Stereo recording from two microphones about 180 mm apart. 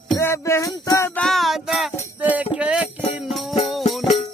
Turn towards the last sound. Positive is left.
turn(degrees=0)  # may be behind; listen again after turning